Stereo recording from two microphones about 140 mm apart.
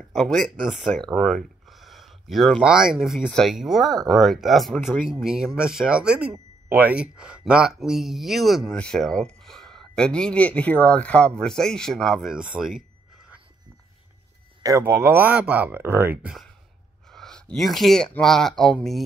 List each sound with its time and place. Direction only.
0.1 s speech: centre (ahead or behind)
14.6 s speech: 20° right (ahead or behind)
17.1 s speech: 5° left (ahead or behind)